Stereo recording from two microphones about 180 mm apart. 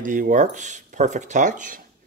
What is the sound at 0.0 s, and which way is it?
Speech, 45° right (ahead or behind).